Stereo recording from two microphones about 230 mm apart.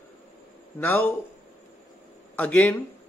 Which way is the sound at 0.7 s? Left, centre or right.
Centre.